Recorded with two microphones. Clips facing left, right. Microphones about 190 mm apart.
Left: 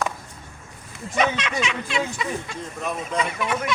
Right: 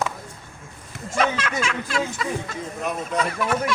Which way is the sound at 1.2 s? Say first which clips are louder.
Even; 5° right (ahead or behind).